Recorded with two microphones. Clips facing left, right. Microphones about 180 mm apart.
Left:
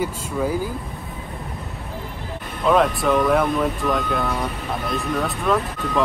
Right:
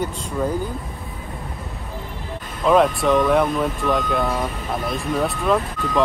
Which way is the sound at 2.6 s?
Centre (ahead or behind).